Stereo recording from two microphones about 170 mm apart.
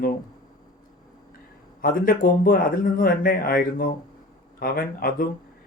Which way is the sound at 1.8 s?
55° left (ahead or behind).